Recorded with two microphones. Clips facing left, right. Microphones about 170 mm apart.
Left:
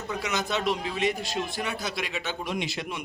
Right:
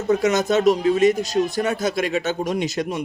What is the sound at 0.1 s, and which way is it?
A man's voice, 45° right (ahead or behind).